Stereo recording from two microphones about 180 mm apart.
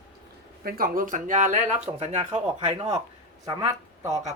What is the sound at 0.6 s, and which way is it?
Speech, 55° right (ahead or behind).